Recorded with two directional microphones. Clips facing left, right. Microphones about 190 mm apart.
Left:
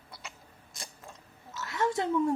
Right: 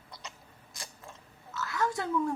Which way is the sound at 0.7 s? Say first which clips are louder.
Even; 25° left (ahead or behind).